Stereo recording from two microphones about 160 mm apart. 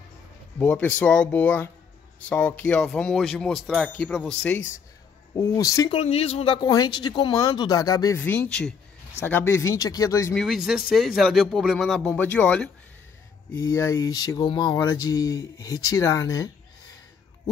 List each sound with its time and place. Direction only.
0.6 s speech: 10° left (ahead or behind)
5.3 s speech: 20° left (ahead or behind)
5.9 s speech: 40° left (ahead or behind); by 8.2 s 20° left (ahead or behind)
8.2 s speech: 10° left (ahead or behind)
10.3 s speech: centre (ahead or behind)
13.7 s speech: 20° left (ahead or behind)